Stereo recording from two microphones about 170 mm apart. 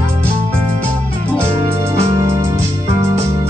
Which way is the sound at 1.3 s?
15° right (ahead or behind).